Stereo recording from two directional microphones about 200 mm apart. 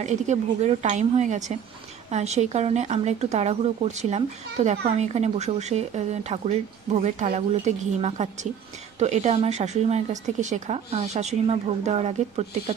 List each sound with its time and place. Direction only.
0.0 s speech: 35° right (ahead or behind)